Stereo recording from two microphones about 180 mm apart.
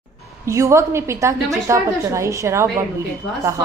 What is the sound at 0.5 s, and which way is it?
A woman's voice, 15° right (ahead or behind).